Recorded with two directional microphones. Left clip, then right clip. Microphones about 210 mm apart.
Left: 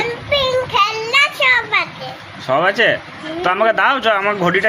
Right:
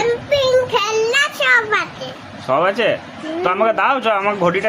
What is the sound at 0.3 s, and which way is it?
Child singing, 20° right (ahead or behind).